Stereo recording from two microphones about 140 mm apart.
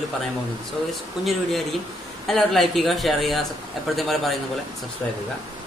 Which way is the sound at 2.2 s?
Centre (ahead or behind).